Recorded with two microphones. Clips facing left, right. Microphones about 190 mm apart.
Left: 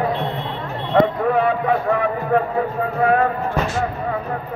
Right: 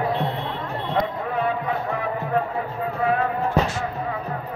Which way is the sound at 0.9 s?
65° left (ahead or behind).